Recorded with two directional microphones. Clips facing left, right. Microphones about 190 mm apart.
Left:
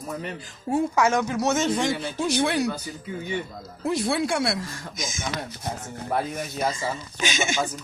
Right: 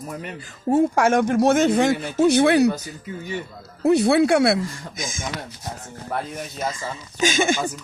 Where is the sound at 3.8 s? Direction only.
65° right (ahead or behind).